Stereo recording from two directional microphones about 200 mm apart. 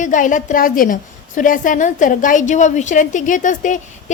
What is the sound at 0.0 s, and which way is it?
A woman's voice, 40° left (ahead or behind).